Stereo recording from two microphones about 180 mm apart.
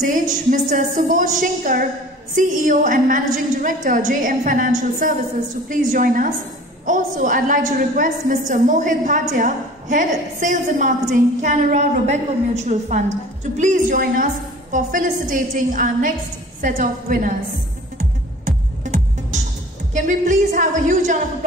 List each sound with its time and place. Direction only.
0.0 s a woman's voice: 45° right (ahead or behind)
17.9 s music: 45° right (ahead or behind)
19.9 s a woman's voice: 45° right (ahead or behind)